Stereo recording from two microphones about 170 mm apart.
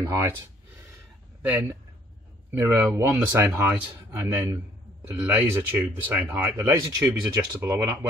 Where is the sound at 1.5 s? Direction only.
15° right (ahead or behind).